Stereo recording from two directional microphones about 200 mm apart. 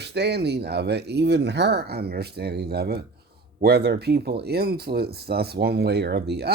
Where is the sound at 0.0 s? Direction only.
55° right (ahead or behind).